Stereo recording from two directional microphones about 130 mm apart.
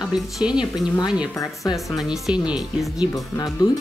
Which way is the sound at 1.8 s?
Centre (ahead or behind).